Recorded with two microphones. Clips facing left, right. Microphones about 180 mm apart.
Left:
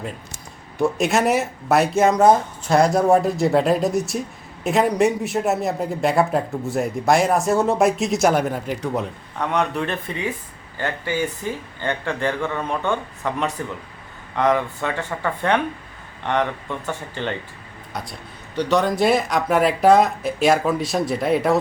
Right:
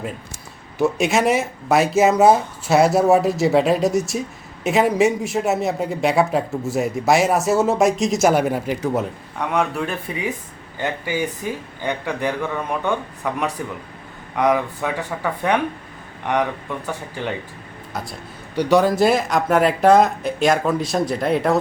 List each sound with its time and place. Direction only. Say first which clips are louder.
0.8 s speech: right 1 dB; centre (ahead or behind)